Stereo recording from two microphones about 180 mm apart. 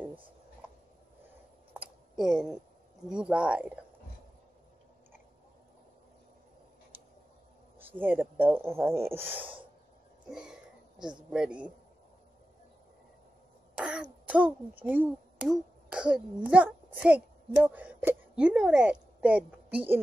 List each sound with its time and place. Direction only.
1.7 s a sound: 5° right (ahead or behind)
3.1 s speech: 5° right (ahead or behind)
8.0 s speech: 10° right (ahead or behind)
11.3 s a man's voice: 5° right (ahead or behind)
13.7 s throat clearing: 5° right (ahead or behind)
14.2 s speech: 10° right (ahead or behind)